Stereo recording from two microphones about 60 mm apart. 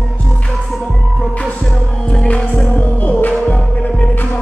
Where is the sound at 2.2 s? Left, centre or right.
Left.